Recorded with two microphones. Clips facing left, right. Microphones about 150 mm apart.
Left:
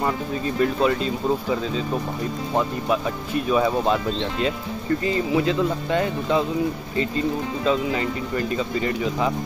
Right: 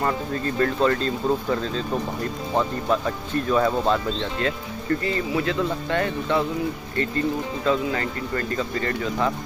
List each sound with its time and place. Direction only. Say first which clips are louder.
0.0 s speech: even; 10° left (ahead or behind)